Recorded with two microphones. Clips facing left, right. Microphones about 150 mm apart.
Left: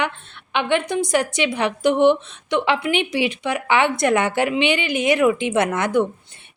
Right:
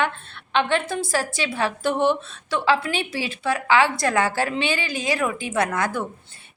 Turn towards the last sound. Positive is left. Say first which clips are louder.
# left 5 dB
turn(degrees=20)  # may be behind; listen again after turning